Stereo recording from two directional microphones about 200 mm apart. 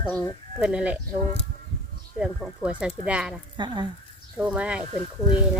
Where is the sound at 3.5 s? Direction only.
20° right (ahead or behind).